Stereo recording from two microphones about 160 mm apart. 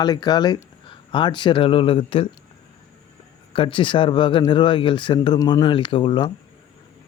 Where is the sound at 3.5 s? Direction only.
35° left (ahead or behind).